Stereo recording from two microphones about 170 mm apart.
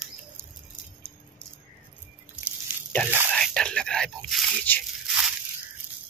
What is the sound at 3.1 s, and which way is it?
Whispering, 10° right (ahead or behind).